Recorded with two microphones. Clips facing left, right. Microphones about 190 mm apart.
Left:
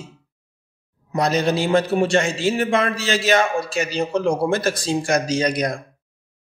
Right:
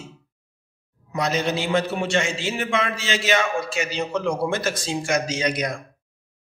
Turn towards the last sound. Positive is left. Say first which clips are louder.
# left 4 dB
turn(degrees=35)  # may be behind; listen again after turning